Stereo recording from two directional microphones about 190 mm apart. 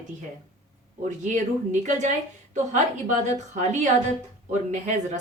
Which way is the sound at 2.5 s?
40° right (ahead or behind).